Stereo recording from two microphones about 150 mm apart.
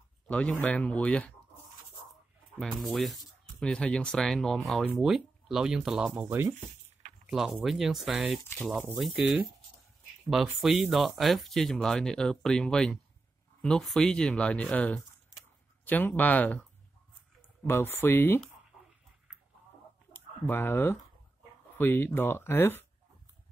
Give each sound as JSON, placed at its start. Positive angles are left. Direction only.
{"t": 0.3, "sound": "speech", "side_deg": 10}
{"t": 2.6, "sound": "speech", "side_deg": 5}
{"t": 6.2, "sound": "speech", "side_deg": -15}
{"t": 7.2, "sound": "speech", "side_deg": -5}
{"t": 17.6, "sound": "speech", "side_deg": 15}
{"t": 20.1, "sound": "a sound", "side_deg": 15}
{"t": 21.7, "sound": "speech", "side_deg": 15}